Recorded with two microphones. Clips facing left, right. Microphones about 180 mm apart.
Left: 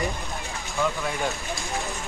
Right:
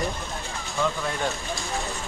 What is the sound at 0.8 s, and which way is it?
Speech, centre (ahead or behind).